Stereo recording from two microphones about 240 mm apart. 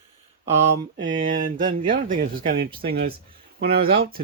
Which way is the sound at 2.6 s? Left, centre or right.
Right.